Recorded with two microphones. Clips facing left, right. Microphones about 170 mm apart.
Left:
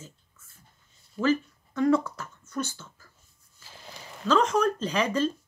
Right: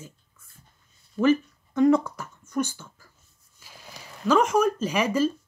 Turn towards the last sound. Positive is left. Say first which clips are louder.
# right 2 dB
turn(degrees=-10)  # may be behind; listen again after turning